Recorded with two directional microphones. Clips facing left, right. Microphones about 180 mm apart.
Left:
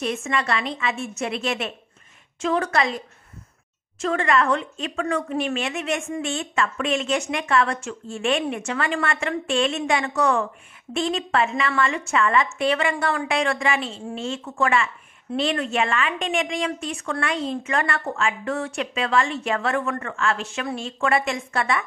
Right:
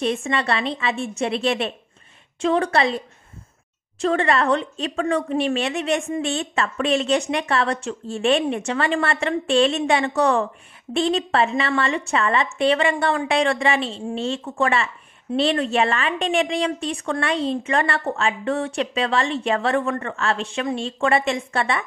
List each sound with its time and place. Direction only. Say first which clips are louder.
0.0 s speech: right 3 dB; 30° right (ahead or behind)
4.0 s speech: right 2 dB; 30° right (ahead or behind)